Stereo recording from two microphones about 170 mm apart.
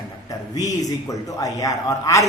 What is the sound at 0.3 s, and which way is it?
A man's voice, 20° left (ahead or behind).